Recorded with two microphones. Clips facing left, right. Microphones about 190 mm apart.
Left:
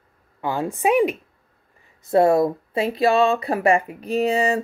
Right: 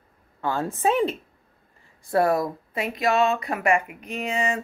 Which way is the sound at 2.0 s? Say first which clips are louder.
Left 5 dB; 25° left (ahead or behind).